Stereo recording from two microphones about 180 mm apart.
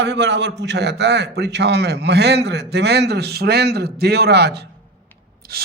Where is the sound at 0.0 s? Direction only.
75° right (ahead or behind).